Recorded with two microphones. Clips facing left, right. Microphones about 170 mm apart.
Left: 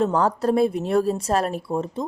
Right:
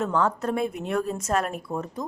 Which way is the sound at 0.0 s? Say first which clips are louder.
Left 4 dB; 35° left (ahead or behind).